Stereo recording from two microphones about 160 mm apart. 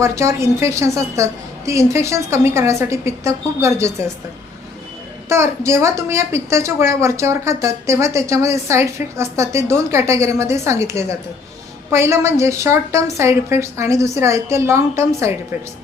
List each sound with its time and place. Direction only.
0.0 s a woman's voice: 15° right (ahead or behind)
5.3 s a woman's voice: 15° right (ahead or behind)